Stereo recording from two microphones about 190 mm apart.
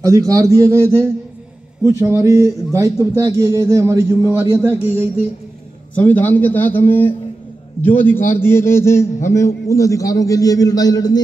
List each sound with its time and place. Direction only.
0.0 s speech: 15° right (ahead or behind)
5.9 s a man's voice: 10° left (ahead or behind)
7.8 s a man's voice: 10° left (ahead or behind)